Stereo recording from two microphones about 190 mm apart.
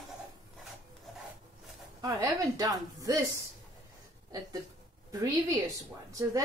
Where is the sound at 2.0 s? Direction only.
20° right (ahead or behind).